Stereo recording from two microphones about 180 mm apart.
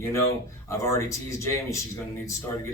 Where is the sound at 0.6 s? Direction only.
15° left (ahead or behind).